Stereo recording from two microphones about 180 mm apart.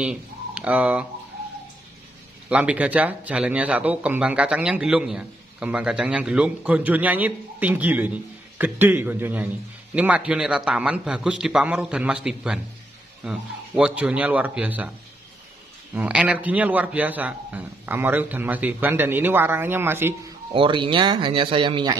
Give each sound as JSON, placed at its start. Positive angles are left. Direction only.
{"t": 0.0, "sound": "speech", "side_deg": -5}
{"t": 2.5, "sound": "a man's voice", "side_deg": -5}
{"t": 15.9, "sound": "speech", "side_deg": -5}
{"t": 20.5, "sound": "speech", "side_deg": -30}